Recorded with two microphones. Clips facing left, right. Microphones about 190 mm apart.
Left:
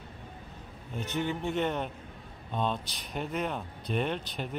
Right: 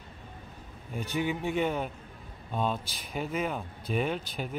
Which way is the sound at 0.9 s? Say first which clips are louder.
Right 1 dB; 10° right (ahead or behind).